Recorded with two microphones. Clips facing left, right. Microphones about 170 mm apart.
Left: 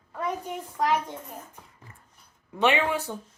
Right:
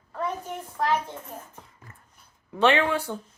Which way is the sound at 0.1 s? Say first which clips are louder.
Even; 10° left (ahead or behind).